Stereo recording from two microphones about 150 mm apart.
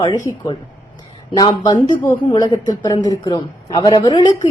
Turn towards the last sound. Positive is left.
turn(degrees=25)  # may be behind; listen again after turning